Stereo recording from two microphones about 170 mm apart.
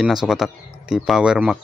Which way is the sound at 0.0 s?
5° right (ahead or behind).